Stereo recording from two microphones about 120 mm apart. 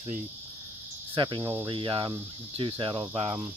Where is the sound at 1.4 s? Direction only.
20° right (ahead or behind).